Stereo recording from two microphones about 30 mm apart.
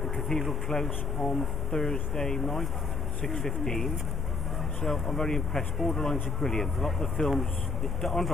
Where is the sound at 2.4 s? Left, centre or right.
Centre.